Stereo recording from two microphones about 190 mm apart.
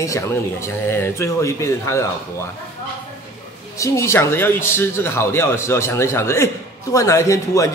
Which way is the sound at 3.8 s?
15° left (ahead or behind).